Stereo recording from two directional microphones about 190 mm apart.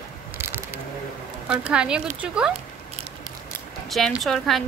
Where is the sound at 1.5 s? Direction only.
5° right (ahead or behind).